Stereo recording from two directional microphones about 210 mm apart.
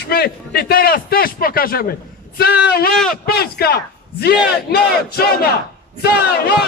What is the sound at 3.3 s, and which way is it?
A man's voice, 45° left (ahead or behind).